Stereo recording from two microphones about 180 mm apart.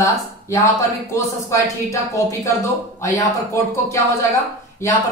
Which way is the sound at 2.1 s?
15° left (ahead or behind).